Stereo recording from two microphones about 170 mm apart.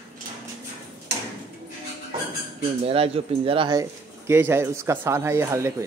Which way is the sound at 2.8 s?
35° right (ahead or behind).